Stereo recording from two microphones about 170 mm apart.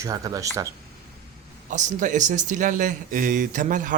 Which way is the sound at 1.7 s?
50° right (ahead or behind).